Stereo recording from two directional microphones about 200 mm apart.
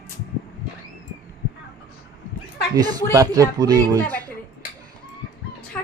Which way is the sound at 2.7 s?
15° right (ahead or behind).